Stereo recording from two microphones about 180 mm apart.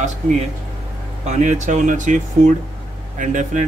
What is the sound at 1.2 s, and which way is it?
Speech, 45° right (ahead or behind).